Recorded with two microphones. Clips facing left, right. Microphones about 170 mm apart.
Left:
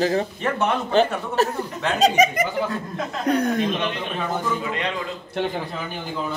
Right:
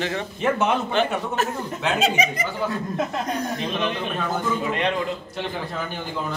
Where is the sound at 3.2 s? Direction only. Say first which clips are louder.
Left 6 dB; 65° left (ahead or behind).